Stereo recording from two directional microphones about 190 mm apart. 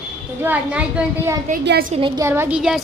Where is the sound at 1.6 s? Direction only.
60° right (ahead or behind).